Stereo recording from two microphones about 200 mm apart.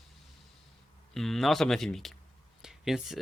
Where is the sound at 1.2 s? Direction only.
Centre (ahead or behind).